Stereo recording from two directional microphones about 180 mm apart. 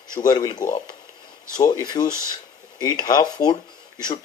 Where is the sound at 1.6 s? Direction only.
20° left (ahead or behind).